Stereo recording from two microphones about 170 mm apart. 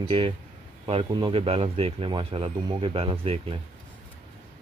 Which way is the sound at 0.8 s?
30° right (ahead or behind).